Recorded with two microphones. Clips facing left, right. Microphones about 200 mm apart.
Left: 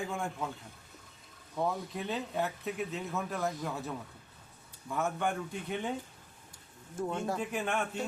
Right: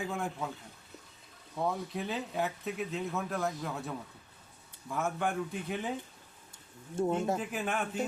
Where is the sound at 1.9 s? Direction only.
Centre (ahead or behind).